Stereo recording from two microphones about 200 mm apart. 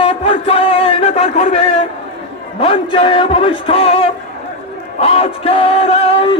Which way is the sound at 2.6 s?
30° left (ahead or behind).